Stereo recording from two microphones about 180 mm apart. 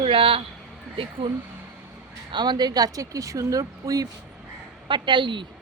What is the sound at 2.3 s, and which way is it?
Speech, 25° right (ahead or behind).